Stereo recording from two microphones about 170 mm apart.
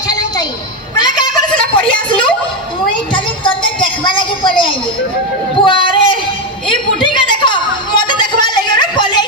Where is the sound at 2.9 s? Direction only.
30° left (ahead or behind).